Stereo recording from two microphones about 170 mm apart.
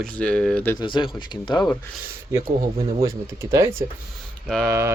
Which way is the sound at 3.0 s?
15° right (ahead or behind).